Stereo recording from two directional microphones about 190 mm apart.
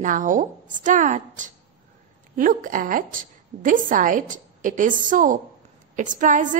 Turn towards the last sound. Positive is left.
turn(degrees=-40)  # may be behind; listen again after turning